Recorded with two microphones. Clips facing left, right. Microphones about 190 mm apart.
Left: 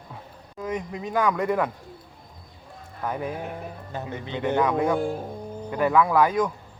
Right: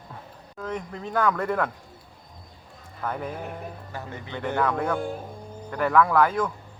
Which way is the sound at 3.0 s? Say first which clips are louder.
Left 2 dB; 10° left (ahead or behind).